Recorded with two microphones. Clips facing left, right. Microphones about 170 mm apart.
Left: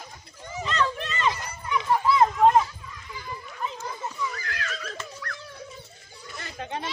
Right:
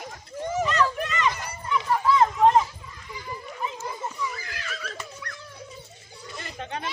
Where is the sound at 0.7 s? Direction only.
25° left (ahead or behind).